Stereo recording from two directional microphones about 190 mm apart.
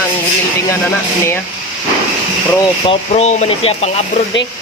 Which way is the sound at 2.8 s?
35° left (ahead or behind).